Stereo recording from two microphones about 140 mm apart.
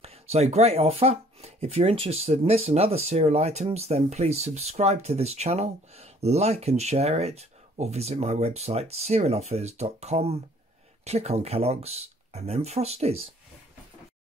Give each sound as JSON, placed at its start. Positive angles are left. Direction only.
{"t": 0.0, "sound": "speech", "side_deg": -50}